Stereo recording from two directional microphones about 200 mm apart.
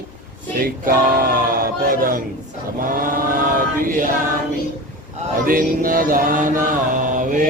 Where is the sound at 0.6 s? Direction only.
45° right (ahead or behind).